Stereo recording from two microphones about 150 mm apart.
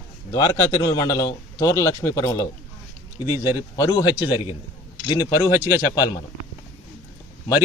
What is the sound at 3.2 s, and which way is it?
Speech, 15° right (ahead or behind).